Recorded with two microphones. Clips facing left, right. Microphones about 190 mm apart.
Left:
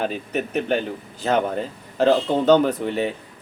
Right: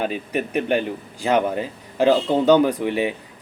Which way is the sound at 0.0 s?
10° right (ahead or behind).